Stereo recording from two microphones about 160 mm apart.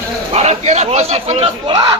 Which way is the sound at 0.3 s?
45° right (ahead or behind).